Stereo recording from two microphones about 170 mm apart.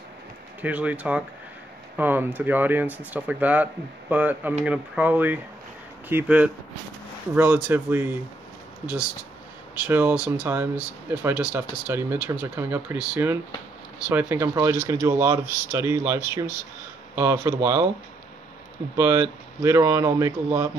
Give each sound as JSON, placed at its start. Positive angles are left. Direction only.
{"t": 0.6, "sound": "speech", "side_deg": -10}
{"t": 9.8, "sound": "speech", "side_deg": -10}
{"t": 18.9, "sound": "speech", "side_deg": -15}